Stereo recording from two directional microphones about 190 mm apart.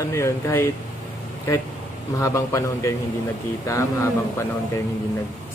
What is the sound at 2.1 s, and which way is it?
Speech, 15° left (ahead or behind).